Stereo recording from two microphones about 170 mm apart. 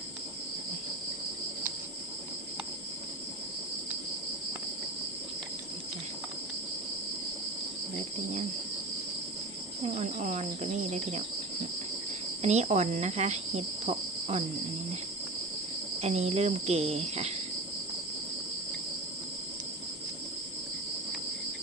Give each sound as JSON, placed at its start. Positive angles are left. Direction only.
{"t": 9.9, "sound": "cricket", "side_deg": -45}
{"t": 12.4, "sound": "speech", "side_deg": -40}
{"t": 16.0, "sound": "cricket", "side_deg": -40}